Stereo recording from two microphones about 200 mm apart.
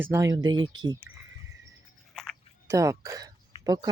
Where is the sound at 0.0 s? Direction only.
15° right (ahead or behind).